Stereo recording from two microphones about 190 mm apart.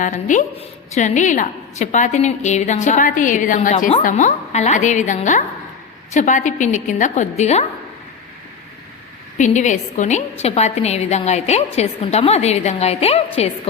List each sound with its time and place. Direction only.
0.0 s a woman's voice: 40° left (ahead or behind)
9.4 s a woman's voice: 40° left (ahead or behind)